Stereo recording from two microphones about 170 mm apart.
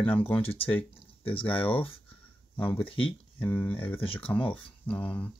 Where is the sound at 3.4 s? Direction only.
10° left (ahead or behind).